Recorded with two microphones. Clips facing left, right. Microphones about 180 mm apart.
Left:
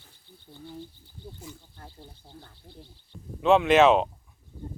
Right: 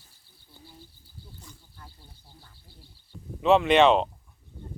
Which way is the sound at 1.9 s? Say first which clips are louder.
Left 8 dB; 55° left (ahead or behind).